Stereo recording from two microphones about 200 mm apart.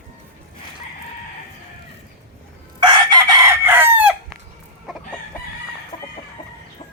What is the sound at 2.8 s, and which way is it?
Chicken, 20° right (ahead or behind).